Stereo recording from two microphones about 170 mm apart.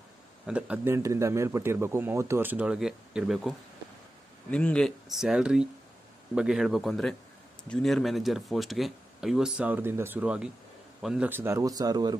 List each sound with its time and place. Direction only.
0.5 s a man's voice: 5° right (ahead or behind)
4.5 s a man's voice: 5° left (ahead or behind); by 12.2 s 25° right (ahead or behind)